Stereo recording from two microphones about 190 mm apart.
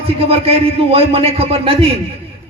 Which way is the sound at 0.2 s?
30° right (ahead or behind).